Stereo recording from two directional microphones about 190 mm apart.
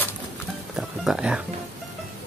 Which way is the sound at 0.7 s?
5° right (ahead or behind).